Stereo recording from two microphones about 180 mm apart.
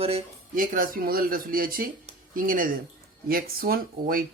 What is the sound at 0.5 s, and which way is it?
Speech, 50° right (ahead or behind).